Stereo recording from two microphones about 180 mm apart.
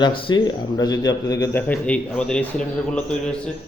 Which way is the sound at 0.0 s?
30° left (ahead or behind).